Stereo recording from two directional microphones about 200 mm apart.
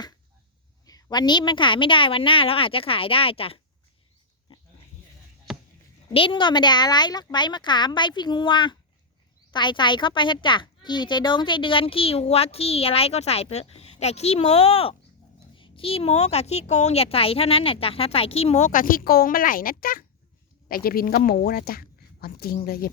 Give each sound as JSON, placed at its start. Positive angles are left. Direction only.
{"t": 0.9, "sound": "a woman's voice", "side_deg": 20}
{"t": 5.5, "sound": "a sound", "side_deg": 0}
{"t": 6.1, "sound": "a woman's voice", "side_deg": 25}